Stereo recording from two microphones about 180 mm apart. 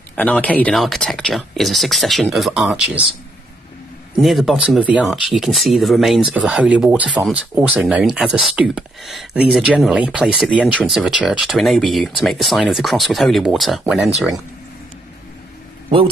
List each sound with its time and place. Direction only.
0.1 s speech: 5° left (ahead or behind)
4.2 s speech: centre (ahead or behind)